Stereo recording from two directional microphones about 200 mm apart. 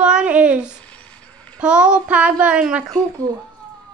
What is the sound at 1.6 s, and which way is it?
Child singing, 5° right (ahead or behind).